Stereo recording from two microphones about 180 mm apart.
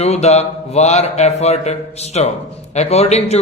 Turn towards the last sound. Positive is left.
turn(degrees=35)  # may be behind; listen again after turning